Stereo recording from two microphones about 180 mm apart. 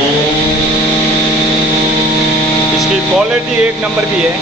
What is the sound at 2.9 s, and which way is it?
A man's voice, 5° right (ahead or behind).